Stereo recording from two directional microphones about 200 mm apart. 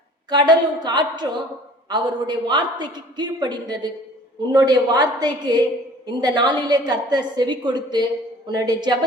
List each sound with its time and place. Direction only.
0.3 s a man's voice: 20° right (ahead or behind)